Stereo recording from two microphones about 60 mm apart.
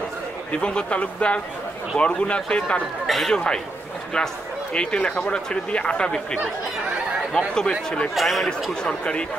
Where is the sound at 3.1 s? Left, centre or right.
Centre.